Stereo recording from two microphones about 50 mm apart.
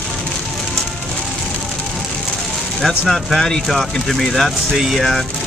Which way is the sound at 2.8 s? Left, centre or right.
Centre.